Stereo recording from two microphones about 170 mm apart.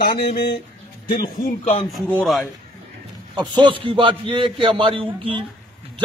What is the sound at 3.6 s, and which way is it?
A man's voice, 30° right (ahead or behind).